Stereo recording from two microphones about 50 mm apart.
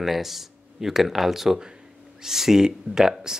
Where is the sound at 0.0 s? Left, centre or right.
Centre.